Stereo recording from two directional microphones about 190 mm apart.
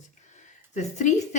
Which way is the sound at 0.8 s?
40° left (ahead or behind).